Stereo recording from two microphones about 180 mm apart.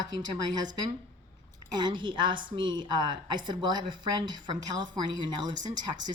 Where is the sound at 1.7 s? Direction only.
25° right (ahead or behind).